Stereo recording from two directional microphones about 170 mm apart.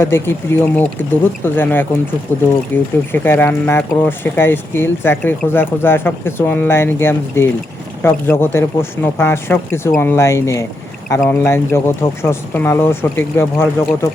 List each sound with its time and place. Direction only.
0.0 s speech: 15° left (ahead or behind)